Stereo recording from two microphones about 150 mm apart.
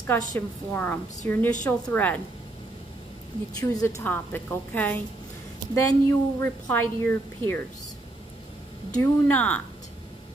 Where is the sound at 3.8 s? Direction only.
20° left (ahead or behind).